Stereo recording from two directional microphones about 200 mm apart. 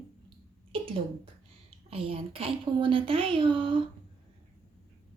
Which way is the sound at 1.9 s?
30° right (ahead or behind).